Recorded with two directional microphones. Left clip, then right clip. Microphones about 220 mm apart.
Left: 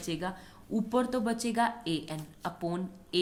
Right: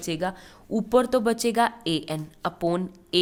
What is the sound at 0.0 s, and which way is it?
A woman's voice, 40° right (ahead or behind).